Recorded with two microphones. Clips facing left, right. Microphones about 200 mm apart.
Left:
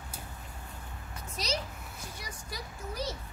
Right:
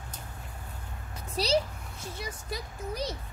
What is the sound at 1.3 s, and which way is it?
Speech, 35° right (ahead or behind).